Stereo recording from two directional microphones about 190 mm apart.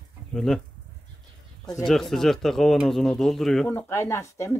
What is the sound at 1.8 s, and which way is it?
Speech, centre (ahead or behind).